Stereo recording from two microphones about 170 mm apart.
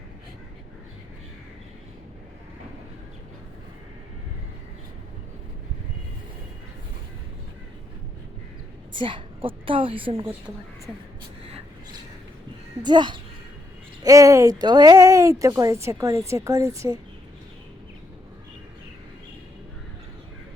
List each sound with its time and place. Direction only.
8.9 s a woman's voice: 30° right (ahead or behind)
11.4 s vehicle: 35° right (ahead or behind)
12.8 s speech: 25° right (ahead or behind)